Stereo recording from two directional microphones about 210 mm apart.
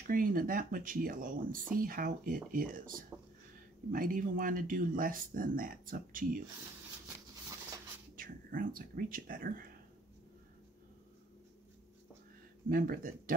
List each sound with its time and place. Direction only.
0.1 s speech: 40° right (ahead or behind)
7.1 s a sound: 15° right (ahead or behind)
8.2 s speech: 40° right (ahead or behind)
12.6 s speech: 40° right (ahead or behind)